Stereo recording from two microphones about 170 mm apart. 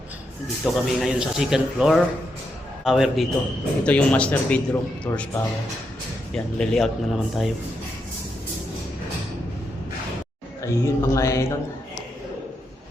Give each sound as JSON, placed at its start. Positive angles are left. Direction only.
{"t": 0.6, "sound": "speech", "side_deg": 0}
{"t": 10.6, "sound": "speech", "side_deg": 15}